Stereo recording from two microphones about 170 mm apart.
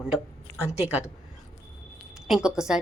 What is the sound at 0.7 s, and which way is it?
Speech, 40° left (ahead or behind).